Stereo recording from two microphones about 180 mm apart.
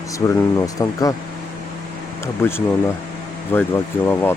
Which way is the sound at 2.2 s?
15° left (ahead or behind).